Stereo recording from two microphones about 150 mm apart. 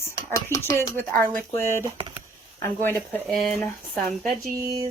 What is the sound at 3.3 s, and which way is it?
Speech, 5° left (ahead or behind).